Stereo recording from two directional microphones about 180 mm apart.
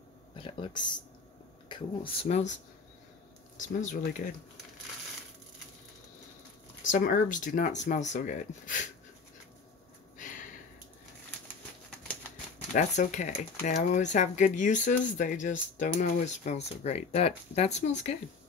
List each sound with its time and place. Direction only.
0.4 s speech: 25° left (ahead or behind)
3.5 s speech: 45° left (ahead or behind)
6.8 s speech: 50° left (ahead or behind)
12.7 s speech: 45° left (ahead or behind)